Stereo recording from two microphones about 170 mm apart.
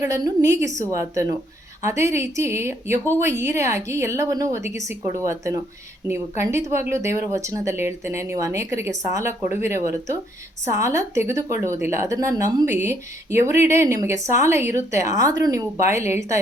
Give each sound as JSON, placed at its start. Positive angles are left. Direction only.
{"t": 0.0, "sound": "a woman's voice", "side_deg": -20}